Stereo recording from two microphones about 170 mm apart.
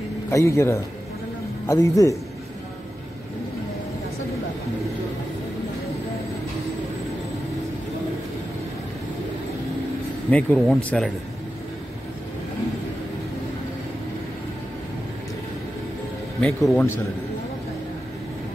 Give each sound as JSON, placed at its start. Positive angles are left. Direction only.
{"t": 0.3, "sound": "a man's voice", "side_deg": 20}
{"t": 10.3, "sound": "speech", "side_deg": 5}
{"t": 16.3, "sound": "speech", "side_deg": 5}